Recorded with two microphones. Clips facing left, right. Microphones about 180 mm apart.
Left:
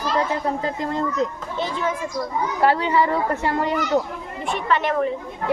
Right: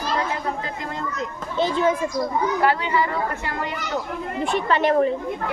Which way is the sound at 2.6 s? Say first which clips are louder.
Left 5 dB; 35° left (ahead or behind).